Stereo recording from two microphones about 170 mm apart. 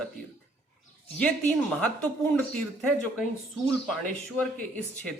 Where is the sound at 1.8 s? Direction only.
10° left (ahead or behind).